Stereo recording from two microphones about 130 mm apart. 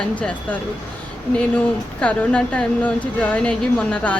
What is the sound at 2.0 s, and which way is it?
Speech, 10° left (ahead or behind).